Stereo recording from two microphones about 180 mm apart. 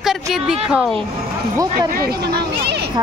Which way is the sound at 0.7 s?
Centre (ahead or behind).